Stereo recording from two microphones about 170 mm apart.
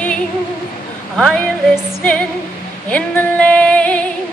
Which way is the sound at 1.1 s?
5° left (ahead or behind).